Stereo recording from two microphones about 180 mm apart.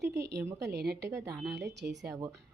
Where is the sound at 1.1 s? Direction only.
15° right (ahead or behind).